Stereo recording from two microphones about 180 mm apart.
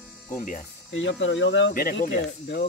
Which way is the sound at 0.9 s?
90° left.